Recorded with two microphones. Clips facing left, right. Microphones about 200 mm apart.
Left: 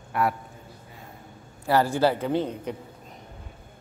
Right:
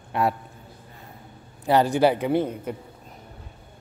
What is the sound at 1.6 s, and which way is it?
Speech, 20° right (ahead or behind).